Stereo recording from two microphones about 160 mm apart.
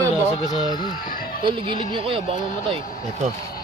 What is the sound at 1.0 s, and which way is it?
Speech, 65° left (ahead or behind).